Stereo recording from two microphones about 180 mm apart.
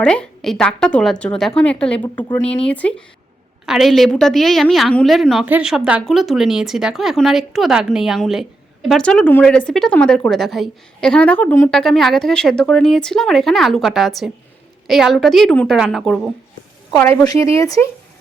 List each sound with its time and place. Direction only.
0.0 s a woman's voice: 5° left (ahead or behind)
16.9 s a woman's voice: 15° left (ahead or behind)